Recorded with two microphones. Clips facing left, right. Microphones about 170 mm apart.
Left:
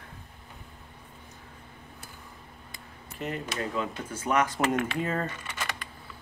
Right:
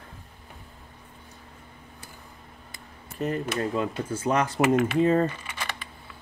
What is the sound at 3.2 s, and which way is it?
Speech, 40° right (ahead or behind).